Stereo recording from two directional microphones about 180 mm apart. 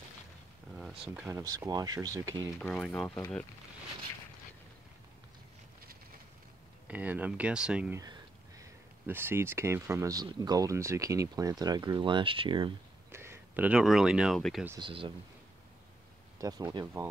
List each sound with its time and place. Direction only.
0.7 s speech: centre (ahead or behind)
1.4 s speech: 20° right (ahead or behind)
2.6 s speech: 5° left (ahead or behind)
6.9 s speech: 10° right (ahead or behind)
8.0 s speech: 20° right (ahead or behind)
13.1 s speech: 15° right (ahead or behind)
14.8 s speech: 30° right (ahead or behind)
16.3 s speech: 20° right (ahead or behind)